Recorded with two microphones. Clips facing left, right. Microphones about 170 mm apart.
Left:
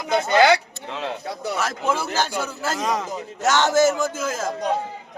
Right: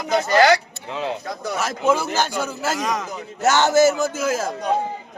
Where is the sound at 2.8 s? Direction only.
30° left (ahead or behind).